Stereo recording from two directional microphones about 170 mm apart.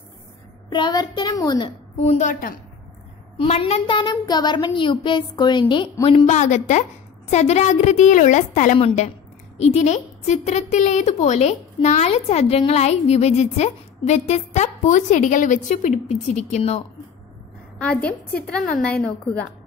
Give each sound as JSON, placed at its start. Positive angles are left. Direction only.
{"t": 0.7, "sound": "a woman's voice", "side_deg": 25}
{"t": 2.0, "sound": "a woman's voice", "side_deg": 45}
{"t": 17.7, "sound": "a woman's voice", "side_deg": 5}